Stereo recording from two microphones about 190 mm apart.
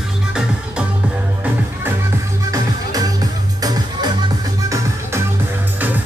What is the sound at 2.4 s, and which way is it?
Music, 20° right (ahead or behind).